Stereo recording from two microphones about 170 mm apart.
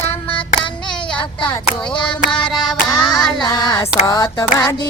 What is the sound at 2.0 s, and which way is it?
Music, 5° left (ahead or behind).